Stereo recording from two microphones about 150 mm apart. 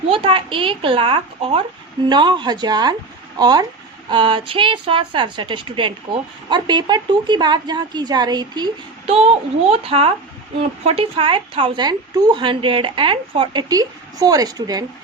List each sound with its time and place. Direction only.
0.1 s a woman's voice: 35° right (ahead or behind)
9.6 s a woman's voice: 40° right (ahead or behind)